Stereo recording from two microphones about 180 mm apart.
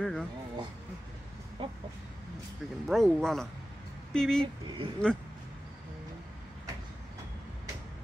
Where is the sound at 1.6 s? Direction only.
30° right (ahead or behind).